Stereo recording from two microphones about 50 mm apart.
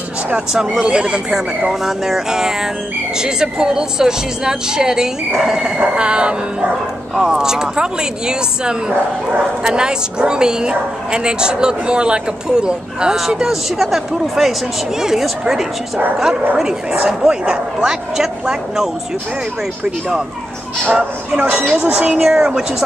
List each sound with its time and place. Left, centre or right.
0.5 s speech: centre
1.7 s speech: centre
5.8 s speech: centre
17.2 s speech: centre
20.8 s speech: right
21.5 s speech: centre
22.1 s speech: centre